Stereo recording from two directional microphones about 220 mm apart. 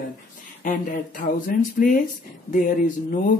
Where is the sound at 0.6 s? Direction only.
40° left (ahead or behind).